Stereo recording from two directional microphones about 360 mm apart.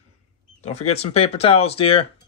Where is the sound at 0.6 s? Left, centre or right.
Centre.